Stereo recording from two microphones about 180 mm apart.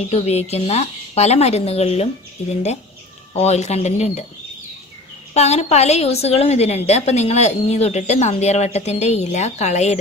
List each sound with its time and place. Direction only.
0.1 s a woman's voice: 35° left (ahead or behind)
3.3 s a woman's voice: 35° left (ahead or behind)
5.3 s a woman's voice: 35° left (ahead or behind)